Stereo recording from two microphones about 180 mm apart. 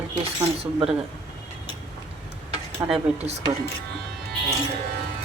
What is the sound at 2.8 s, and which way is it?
Speech, 20° right (ahead or behind).